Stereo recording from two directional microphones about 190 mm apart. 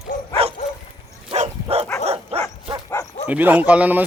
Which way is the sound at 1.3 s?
35° right (ahead or behind).